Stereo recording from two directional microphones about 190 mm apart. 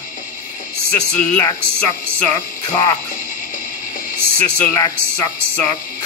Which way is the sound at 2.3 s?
20° left (ahead or behind).